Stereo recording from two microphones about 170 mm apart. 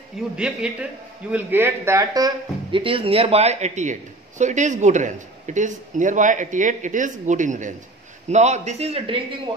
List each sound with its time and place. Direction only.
0.4 s a man's voice: 5° right (ahead or behind); by 9.2 s 35° right (ahead or behind)